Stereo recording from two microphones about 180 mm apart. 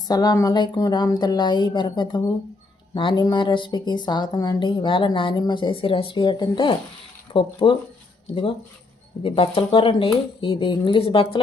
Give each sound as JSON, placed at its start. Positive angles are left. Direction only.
{"t": 0.1, "sound": "a woman's voice", "side_deg": 20}
{"t": 9.2, "sound": "speech", "side_deg": 30}